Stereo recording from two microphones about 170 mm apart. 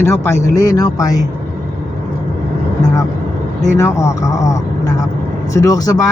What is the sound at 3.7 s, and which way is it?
Speech, 15° left (ahead or behind).